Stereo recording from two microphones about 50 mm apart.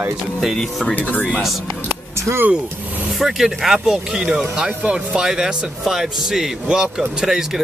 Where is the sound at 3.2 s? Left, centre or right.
Centre.